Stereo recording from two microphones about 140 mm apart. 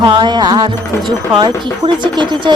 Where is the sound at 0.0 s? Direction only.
30° right (ahead or behind).